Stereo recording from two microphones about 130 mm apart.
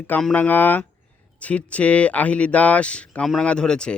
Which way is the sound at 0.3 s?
15° left (ahead or behind).